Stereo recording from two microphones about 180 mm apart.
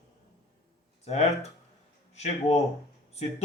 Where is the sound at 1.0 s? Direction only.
40° left (ahead or behind).